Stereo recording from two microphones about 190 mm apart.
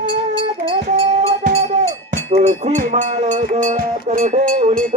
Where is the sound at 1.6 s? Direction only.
35° right (ahead or behind).